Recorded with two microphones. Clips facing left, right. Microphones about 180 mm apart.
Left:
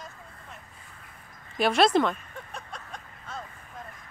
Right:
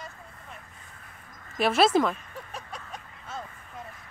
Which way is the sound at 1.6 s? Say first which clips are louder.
Even; 5° right (ahead or behind).